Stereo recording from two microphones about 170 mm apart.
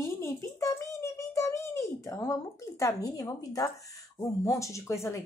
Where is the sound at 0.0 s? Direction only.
15° left (ahead or behind).